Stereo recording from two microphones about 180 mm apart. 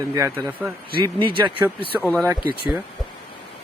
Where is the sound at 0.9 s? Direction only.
25° right (ahead or behind).